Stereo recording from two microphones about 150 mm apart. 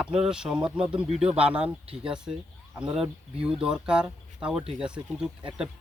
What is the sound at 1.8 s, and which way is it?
Speech, 40° right (ahead or behind).